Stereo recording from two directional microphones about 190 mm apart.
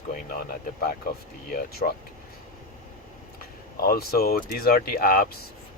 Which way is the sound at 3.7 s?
50° left (ahead or behind).